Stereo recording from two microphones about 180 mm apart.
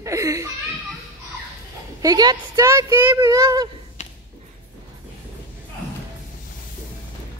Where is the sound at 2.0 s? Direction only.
20° right (ahead or behind).